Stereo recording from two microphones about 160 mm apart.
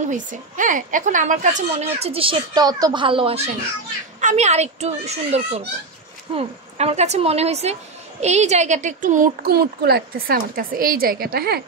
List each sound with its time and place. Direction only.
0.0 s a woman's voice: 55° right (ahead or behind); by 3.4 s 35° right (ahead or behind)
4.2 s a woman's voice: 45° right (ahead or behind); by 11.6 s 80° right